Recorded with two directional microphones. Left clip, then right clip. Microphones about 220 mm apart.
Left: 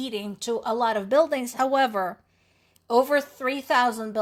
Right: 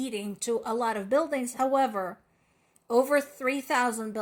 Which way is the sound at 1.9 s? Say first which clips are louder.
Left 5 dB; 20° left (ahead or behind).